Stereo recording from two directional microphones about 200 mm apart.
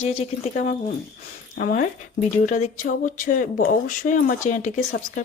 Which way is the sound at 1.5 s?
45° left (ahead or behind).